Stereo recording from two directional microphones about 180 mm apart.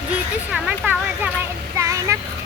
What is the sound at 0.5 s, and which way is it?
Speech, 5° right (ahead or behind).